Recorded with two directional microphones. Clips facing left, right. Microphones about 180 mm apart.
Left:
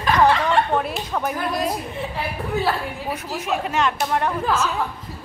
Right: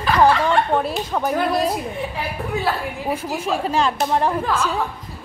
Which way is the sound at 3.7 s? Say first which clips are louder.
Right 3 dB; 30° right (ahead or behind).